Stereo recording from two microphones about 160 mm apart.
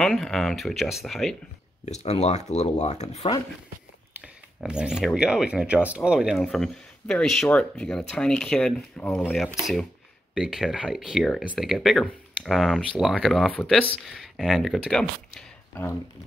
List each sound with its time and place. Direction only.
0.0 s speech: centre (ahead or behind)
1.9 s speech: 45° left (ahead or behind)
4.6 s speech: 5° right (ahead or behind)
10.3 s speech: 5° right (ahead or behind); by 16.0 s 10° left (ahead or behind)